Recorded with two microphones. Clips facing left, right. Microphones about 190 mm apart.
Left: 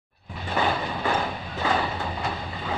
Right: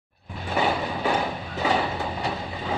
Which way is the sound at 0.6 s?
10° right (ahead or behind).